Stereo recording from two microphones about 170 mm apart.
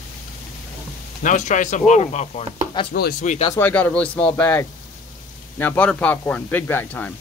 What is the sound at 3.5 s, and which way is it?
Speech, 10° left (ahead or behind).